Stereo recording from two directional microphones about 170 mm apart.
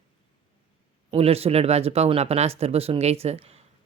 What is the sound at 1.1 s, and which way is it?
Speech, 35° right (ahead or behind).